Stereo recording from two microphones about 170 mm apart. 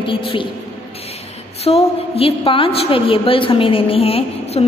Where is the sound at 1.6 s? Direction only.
35° left (ahead or behind).